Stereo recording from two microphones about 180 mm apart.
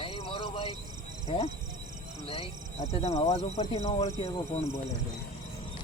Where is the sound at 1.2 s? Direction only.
35° left (ahead or behind).